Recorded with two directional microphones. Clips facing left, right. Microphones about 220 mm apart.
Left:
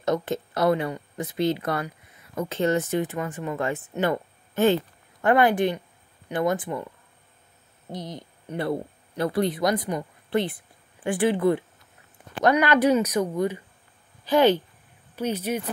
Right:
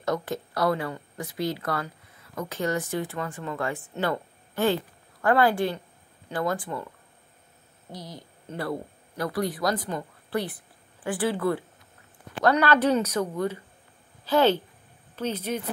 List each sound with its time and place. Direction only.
0.0 s speech: 20° left (ahead or behind)
7.9 s speech: 20° left (ahead or behind)